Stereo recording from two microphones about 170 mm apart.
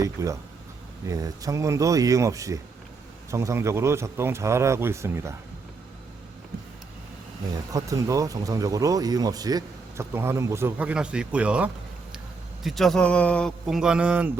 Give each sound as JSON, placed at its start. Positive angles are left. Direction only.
{"t": 0.0, "sound": "a man's voice", "side_deg": -20}
{"t": 7.7, "sound": "a man's voice", "side_deg": -20}